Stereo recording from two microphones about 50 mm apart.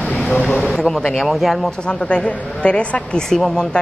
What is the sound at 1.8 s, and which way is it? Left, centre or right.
A woman's voice, left.